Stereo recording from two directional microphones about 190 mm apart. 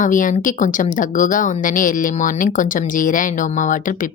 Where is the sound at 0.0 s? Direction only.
45° left (ahead or behind).